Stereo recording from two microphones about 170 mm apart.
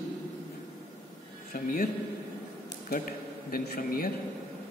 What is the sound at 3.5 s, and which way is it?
Speech, 60° left (ahead or behind).